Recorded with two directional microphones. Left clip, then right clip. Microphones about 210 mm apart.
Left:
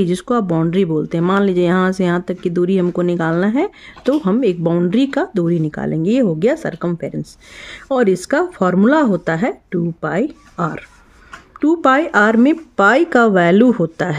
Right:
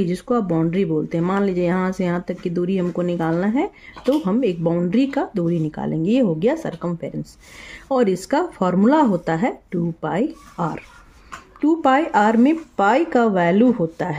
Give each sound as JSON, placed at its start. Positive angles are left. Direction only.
{"t": 0.0, "sound": "speech", "side_deg": 40}